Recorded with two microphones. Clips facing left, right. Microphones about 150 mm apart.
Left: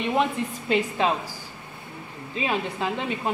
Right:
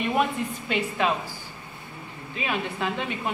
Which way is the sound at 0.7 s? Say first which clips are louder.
Left 3 dB; 25° left (ahead or behind).